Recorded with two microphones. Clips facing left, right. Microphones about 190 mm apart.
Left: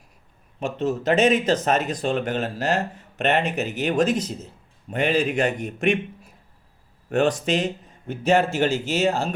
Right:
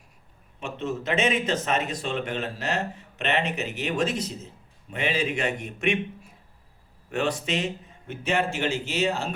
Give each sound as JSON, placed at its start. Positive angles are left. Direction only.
{"t": 0.6, "sound": "speech", "side_deg": 40}
{"t": 7.1, "sound": "a man's voice", "side_deg": 40}